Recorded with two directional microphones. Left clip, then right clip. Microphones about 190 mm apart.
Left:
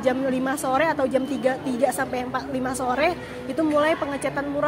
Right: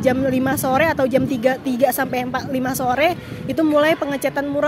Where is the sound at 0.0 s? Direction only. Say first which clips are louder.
Right 5 dB; 45° right (ahead or behind).